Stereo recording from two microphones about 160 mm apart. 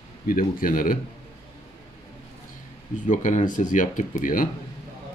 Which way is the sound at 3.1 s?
50° left (ahead or behind).